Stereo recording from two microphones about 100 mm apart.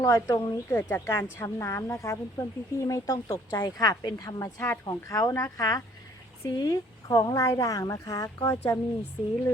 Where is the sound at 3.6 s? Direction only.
45° left (ahead or behind).